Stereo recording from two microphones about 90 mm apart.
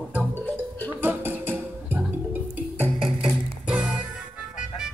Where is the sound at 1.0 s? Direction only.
25° right (ahead or behind).